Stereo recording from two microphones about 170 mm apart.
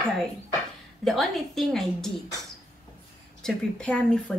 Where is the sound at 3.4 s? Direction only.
5° left (ahead or behind).